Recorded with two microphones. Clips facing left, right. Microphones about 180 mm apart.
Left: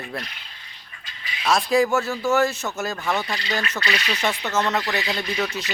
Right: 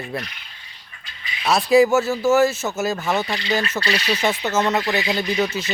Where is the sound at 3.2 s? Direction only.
20° right (ahead or behind).